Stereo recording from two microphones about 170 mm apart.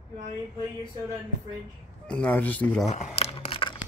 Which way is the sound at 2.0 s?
5° left (ahead or behind).